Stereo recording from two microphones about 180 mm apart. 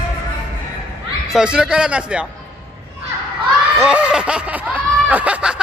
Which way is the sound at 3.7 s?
5° right (ahead or behind).